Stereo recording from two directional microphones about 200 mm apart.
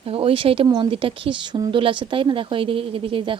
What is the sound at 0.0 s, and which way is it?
Speech, 30° right (ahead or behind).